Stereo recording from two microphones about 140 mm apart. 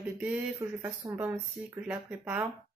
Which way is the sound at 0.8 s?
20° right (ahead or behind).